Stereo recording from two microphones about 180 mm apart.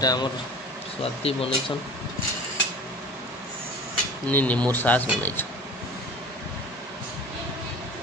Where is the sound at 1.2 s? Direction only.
35° left (ahead or behind).